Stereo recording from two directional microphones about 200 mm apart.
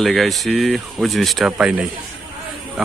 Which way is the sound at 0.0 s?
Centre (ahead or behind).